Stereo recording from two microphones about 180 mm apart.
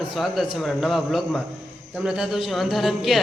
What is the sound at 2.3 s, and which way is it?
Speech, centre (ahead or behind).